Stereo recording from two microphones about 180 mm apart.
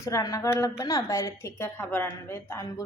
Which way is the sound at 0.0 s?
20° left (ahead or behind).